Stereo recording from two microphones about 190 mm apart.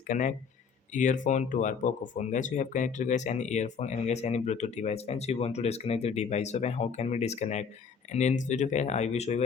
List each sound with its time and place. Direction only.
0.1 s speech: 40° left (ahead or behind)